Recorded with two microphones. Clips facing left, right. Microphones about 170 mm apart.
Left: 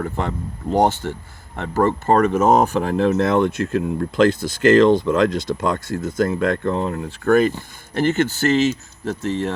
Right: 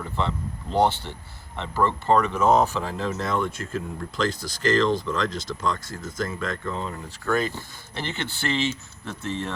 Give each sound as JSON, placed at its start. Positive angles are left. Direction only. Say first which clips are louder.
{"t": 0.0, "sound": "speech", "louder": "left 4 dB", "side_deg": 50}
{"t": 7.9, "sound": "speech", "louder": "left 13 dB", "side_deg": 45}